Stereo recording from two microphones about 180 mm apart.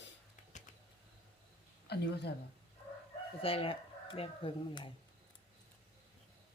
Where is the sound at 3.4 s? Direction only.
30° left (ahead or behind).